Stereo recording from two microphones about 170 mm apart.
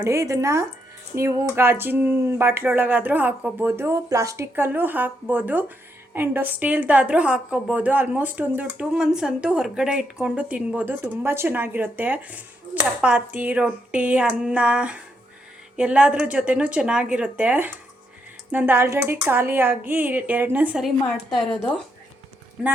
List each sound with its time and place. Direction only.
0.0 s a woman's voice: 15° right (ahead or behind)